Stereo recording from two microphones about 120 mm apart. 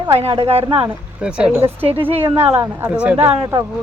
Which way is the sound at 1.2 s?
10° right (ahead or behind).